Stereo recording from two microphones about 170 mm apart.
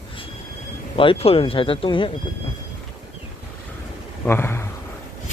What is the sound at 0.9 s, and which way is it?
Speech, 30° left (ahead or behind).